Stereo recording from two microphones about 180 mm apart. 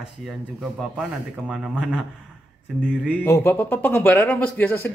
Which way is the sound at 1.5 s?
Centre (ahead or behind).